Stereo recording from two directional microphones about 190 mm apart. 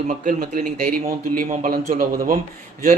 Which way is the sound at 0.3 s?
40° right (ahead or behind).